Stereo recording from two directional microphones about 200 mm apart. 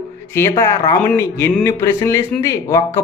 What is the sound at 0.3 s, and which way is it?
Speech, 15° left (ahead or behind).